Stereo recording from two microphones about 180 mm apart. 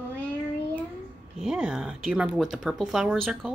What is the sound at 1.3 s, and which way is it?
Speech, 5° right (ahead or behind).